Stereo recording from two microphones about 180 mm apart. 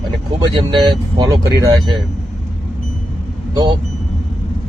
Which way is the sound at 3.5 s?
25° right (ahead or behind).